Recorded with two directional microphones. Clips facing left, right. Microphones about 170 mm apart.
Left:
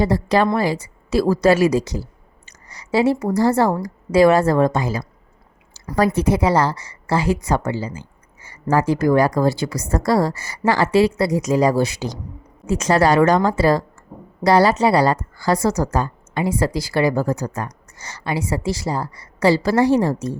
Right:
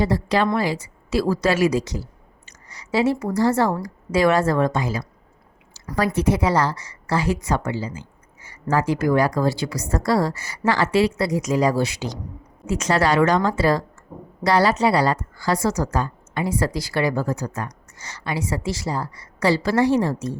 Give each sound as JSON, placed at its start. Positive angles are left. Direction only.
{"t": 0.0, "sound": "a woman's voice", "side_deg": 40}
{"t": 16.4, "sound": "a woman's voice", "side_deg": 25}